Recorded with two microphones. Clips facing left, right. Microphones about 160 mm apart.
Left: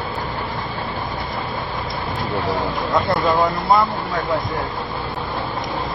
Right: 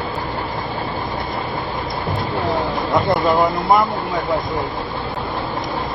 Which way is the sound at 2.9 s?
20° right (ahead or behind).